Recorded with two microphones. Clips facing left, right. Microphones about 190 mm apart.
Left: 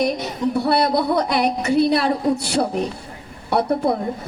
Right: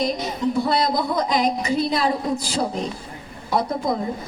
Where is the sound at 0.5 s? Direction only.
70° left (ahead or behind).